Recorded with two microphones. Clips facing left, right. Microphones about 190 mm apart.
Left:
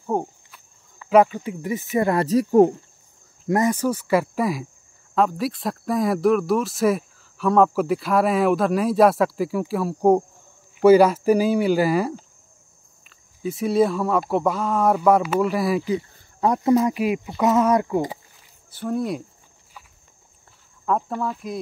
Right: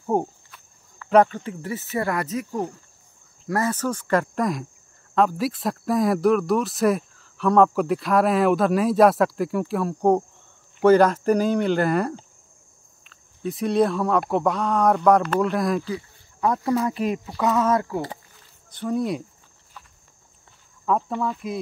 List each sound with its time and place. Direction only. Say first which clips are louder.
0.0 s cricket: right 1 dB; 15° right (ahead or behind)
1.0 s speech: left 1 dB; 5° left (ahead or behind); by 2.4 s 30° left (ahead or behind)
3.4 s speech: left 4 dB; 20° left (ahead or behind)
15.8 s speech: left 6 dB; 20° left (ahead or behind)
17.0 s speech: left 2 dB; 10° left (ahead or behind)
17.3 s speech: left 3 dB; 20° left (ahead or behind)
18.1 s a sound: left 2 dB; 10° left (ahead or behind)
20.8 s speech: even; centre (ahead or behind)